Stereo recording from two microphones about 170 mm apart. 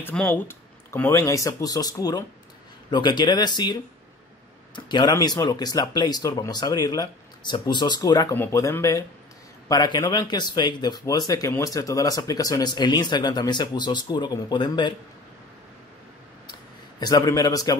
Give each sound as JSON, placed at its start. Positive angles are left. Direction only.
{"t": 0.0, "sound": "speech", "side_deg": 10}
{"t": 4.7, "sound": "speech", "side_deg": 25}
{"t": 17.0, "sound": "speech", "side_deg": 20}